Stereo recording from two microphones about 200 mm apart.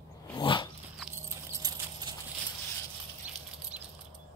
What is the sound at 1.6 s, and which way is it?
Clip-clop, 20° right (ahead or behind).